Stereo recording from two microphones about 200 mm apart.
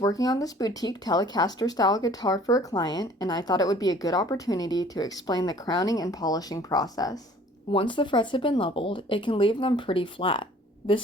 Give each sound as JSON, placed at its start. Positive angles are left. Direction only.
{"t": 0.0, "sound": "speech", "side_deg": 15}